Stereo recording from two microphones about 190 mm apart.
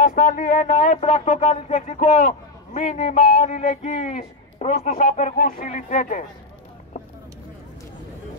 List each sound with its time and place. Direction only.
0.0 s speech: 40° left (ahead or behind)